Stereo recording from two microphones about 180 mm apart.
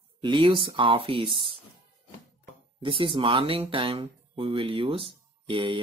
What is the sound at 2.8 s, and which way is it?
Speech, 30° right (ahead or behind).